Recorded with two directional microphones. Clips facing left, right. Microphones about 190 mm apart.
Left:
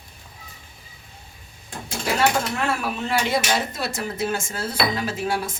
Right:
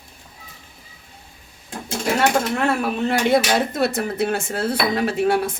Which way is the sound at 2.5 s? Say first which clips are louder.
Right 5 dB; 55° right (ahead or behind).